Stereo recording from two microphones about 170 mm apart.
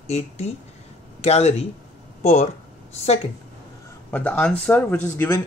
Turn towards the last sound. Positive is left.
turn(degrees=15)  # may be behind; listen again after turning